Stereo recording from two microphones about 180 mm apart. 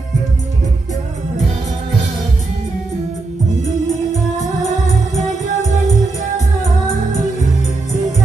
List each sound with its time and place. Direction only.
4.6 s music: 40° left (ahead or behind)